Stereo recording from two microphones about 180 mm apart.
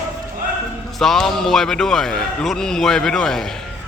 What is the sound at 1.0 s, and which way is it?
A man's voice, centre (ahead or behind).